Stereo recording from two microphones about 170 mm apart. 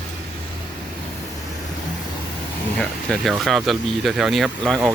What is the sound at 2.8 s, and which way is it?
Speech, 5° left (ahead or behind).